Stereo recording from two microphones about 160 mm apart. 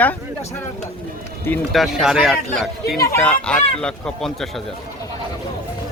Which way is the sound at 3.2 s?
5° left (ahead or behind).